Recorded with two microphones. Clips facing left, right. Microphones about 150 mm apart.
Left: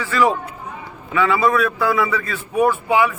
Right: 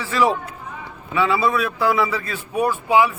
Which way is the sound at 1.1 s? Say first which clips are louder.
Left 2 dB; 30° right (ahead or behind).